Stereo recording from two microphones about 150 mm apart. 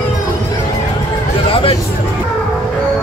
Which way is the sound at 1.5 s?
35° left (ahead or behind).